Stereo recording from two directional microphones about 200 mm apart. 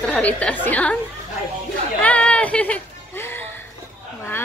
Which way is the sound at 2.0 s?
5° left (ahead or behind).